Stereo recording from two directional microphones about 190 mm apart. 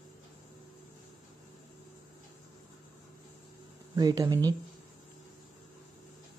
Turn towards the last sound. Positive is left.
turn(degrees=-20)  # may be behind; listen again after turning